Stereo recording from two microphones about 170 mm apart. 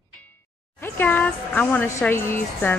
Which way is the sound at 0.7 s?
10° left (ahead or behind).